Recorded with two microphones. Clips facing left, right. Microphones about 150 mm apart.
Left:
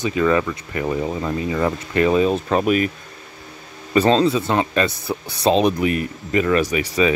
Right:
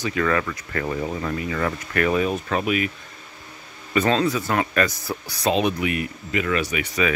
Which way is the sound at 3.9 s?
30° left (ahead or behind).